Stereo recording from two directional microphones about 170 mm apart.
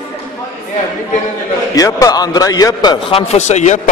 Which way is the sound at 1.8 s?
20° left (ahead or behind).